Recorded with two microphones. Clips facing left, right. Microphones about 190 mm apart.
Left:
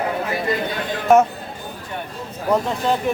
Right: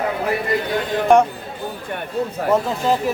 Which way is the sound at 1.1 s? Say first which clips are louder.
Even; 5° left (ahead or behind).